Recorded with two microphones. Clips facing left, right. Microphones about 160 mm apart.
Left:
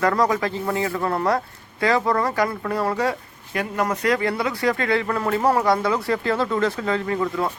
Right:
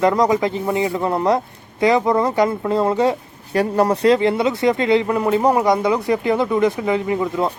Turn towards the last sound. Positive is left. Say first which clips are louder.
# right 3 dB
turn(degrees=-15)  # may be behind; listen again after turning